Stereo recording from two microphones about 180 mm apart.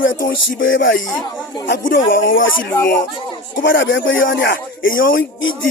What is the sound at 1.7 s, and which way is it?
Music, 80° left.